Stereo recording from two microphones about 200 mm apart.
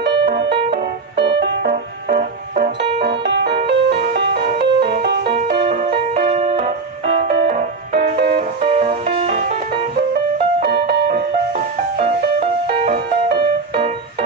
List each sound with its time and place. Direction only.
0.0 s music: 60° right (ahead or behind)
6.2 s music: 30° right (ahead or behind)
7.9 s music: 50° right (ahead or behind)
8.4 s music: 30° right (ahead or behind)
10.6 s music: 55° right (ahead or behind)
12.8 s music: 50° right (ahead or behind)